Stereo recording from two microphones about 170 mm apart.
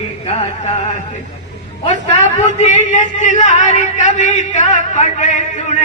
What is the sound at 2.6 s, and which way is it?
A man's voice, 45° left (ahead or behind).